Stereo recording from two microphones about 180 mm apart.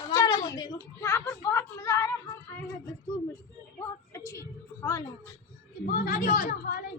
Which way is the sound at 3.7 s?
15° left (ahead or behind).